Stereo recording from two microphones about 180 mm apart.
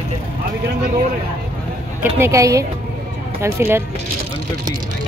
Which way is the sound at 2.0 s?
15° right (ahead or behind).